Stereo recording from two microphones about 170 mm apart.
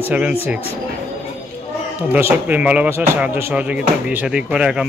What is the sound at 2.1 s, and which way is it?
Speech, 10° right (ahead or behind).